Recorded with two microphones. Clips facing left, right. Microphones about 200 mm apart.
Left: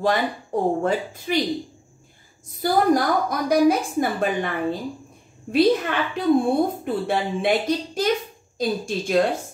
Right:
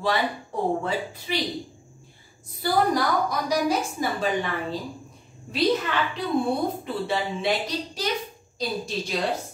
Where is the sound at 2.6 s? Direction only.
50° left (ahead or behind).